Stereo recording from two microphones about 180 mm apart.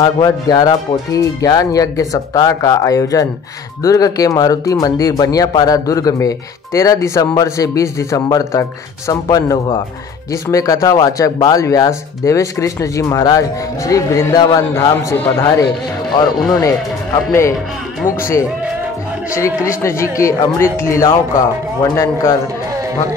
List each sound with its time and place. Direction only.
0.0 s speech: 20° left (ahead or behind)
19.8 s speech: 15° left (ahead or behind)